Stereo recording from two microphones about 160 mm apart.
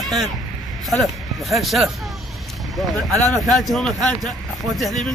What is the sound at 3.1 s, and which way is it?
Speech, 20° right (ahead or behind).